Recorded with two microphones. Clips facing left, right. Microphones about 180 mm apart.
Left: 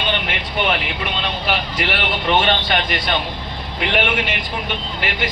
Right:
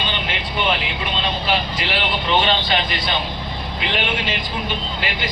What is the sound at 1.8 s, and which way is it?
Vehicle, 60° left (ahead or behind).